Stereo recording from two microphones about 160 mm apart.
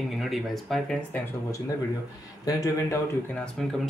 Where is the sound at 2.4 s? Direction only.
20° left (ahead or behind).